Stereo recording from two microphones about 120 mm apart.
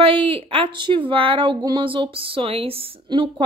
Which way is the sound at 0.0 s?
45° right (ahead or behind).